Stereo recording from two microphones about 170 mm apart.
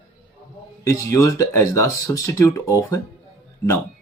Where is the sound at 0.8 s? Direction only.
20° left (ahead or behind).